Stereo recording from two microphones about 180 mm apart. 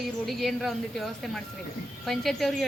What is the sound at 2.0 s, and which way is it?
Speech, centre (ahead or behind).